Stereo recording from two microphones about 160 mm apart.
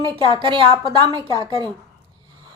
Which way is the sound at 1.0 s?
30° right (ahead or behind).